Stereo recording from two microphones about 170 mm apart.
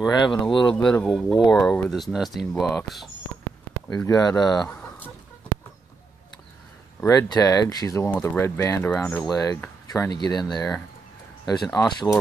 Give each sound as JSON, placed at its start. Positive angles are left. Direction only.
{"t": 0.0, "sound": "speech", "side_deg": 25}
{"t": 0.8, "sound": "speech", "side_deg": 5}
{"t": 4.1, "sound": "speech", "side_deg": 20}
{"t": 4.6, "sound": "chicken", "side_deg": 10}
{"t": 7.0, "sound": "speech", "side_deg": 20}
{"t": 11.4, "sound": "speech", "side_deg": 20}